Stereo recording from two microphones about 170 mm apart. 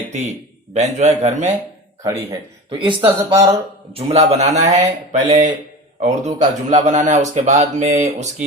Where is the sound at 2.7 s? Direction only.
30° right (ahead or behind).